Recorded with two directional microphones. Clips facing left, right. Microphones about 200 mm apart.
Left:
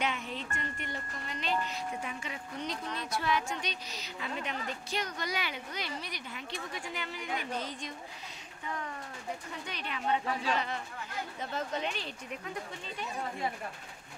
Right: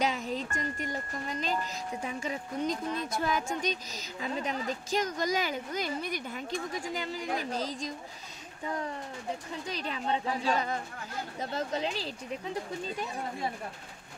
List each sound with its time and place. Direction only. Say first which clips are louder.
0.0 s speech: right 5 dB; 40° right (ahead or behind)